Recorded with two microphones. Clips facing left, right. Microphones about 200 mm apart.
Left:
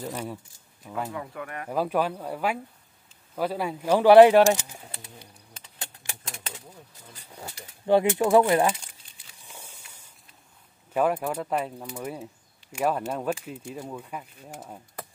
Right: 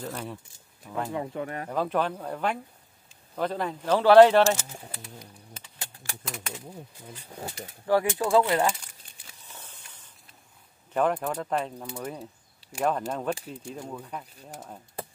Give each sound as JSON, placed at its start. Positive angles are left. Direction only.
{"t": 0.0, "sound": "speech", "side_deg": 10}
{"t": 1.1, "sound": "speech", "side_deg": -25}
{"t": 1.7, "sound": "speech", "side_deg": 10}
{"t": 5.8, "sound": "typewriter", "side_deg": 25}
{"t": 7.8, "sound": "speech", "side_deg": 20}
{"t": 9.5, "sound": "a sound", "side_deg": 10}
{"t": 10.9, "sound": "speech", "side_deg": 10}